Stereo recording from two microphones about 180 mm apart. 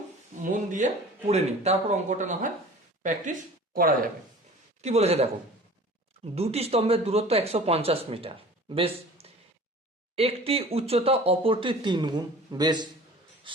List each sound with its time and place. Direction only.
0.5 s a sound: 45° right (ahead or behind)
1.3 s speech: 35° right (ahead or behind)
4.8 s speech: 35° right (ahead or behind)
6.3 s speech: 35° right (ahead or behind)
8.7 s a sound: 30° right (ahead or behind)
10.2 s speech: 35° right (ahead or behind)